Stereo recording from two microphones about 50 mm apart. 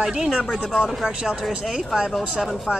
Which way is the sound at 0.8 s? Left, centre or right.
Centre.